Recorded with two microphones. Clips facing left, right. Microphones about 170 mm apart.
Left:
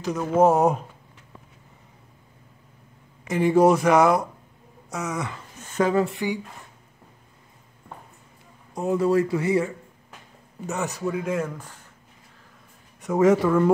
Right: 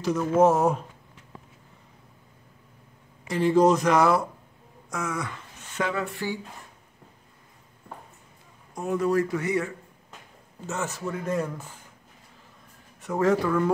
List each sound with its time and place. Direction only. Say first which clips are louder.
0.1 s speech: left 1 dB; 10° left (ahead or behind)
3.3 s speech: left 2 dB; 15° left (ahead or behind)
5.6 s a sound: left 7 dB; 40° left (ahead or behind)
6.0 s speech: left 4 dB; 15° left (ahead or behind)
8.7 s speech: left 3 dB; 25° left (ahead or behind)
10.7 s speech: left 4 dB; 15° left (ahead or behind); by 11.7 s centre (ahead or behind)
13.0 s speech: left 5 dB; 20° left (ahead or behind)